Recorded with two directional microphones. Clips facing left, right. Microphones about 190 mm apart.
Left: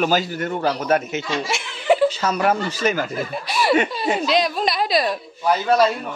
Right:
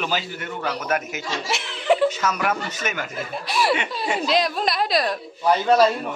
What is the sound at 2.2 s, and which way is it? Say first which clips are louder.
Speech: left 4 dB; 30° left (ahead or behind).